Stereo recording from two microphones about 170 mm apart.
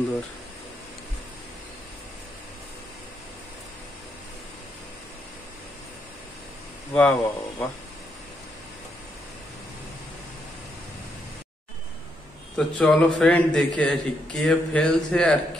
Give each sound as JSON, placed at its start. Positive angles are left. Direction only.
{"t": 6.9, "sound": "speech", "side_deg": 5}
{"t": 12.5, "sound": "a man's voice", "side_deg": 5}